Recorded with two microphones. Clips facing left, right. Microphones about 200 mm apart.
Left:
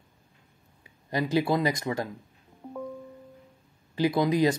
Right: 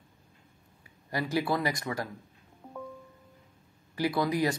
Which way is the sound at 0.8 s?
20° left (ahead or behind).